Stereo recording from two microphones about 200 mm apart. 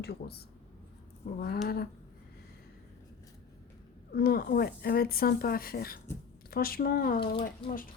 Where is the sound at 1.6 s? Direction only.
50° left (ahead or behind).